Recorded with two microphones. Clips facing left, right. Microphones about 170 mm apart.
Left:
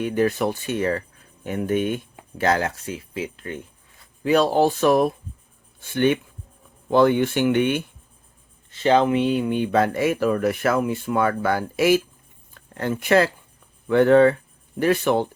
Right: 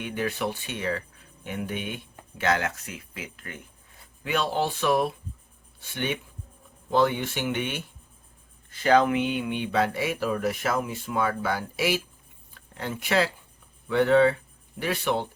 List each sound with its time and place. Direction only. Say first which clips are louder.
0.0 s speech: left 8 dB; 40° left (ahead or behind)
8.7 s speech: left 3 dB; 25° left (ahead or behind); by 15.3 s 45° left (ahead or behind)